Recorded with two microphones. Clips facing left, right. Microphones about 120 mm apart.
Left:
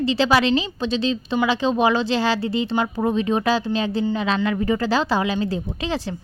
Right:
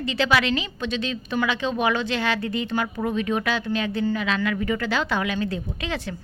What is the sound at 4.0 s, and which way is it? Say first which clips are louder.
Speech: left 3 dB; 20° left (ahead or behind).